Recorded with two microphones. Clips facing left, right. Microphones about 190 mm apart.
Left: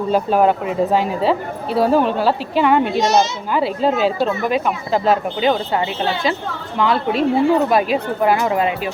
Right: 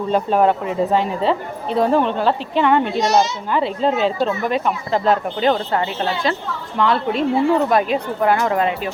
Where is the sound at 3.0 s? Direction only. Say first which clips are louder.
Left 1 dB; 25° left (ahead or behind).